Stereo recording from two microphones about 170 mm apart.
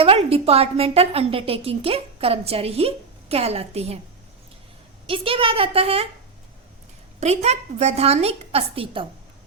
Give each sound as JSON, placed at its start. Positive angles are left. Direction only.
{"t": 0.0, "sound": "a woman's voice", "side_deg": -35}
{"t": 5.0, "sound": "a woman's voice", "side_deg": -30}
{"t": 7.2, "sound": "a woman's voice", "side_deg": -40}